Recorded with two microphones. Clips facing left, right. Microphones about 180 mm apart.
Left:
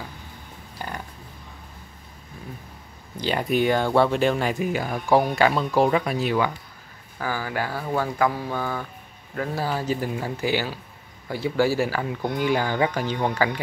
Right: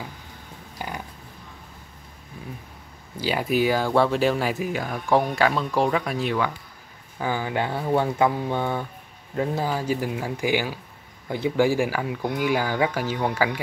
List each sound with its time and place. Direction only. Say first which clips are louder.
0.7 s a sound: right 1 dB; 10° right (ahead or behind)
3.2 s speech: even; 5° right (ahead or behind)
7.2 s speech: right 2 dB; 20° right (ahead or behind)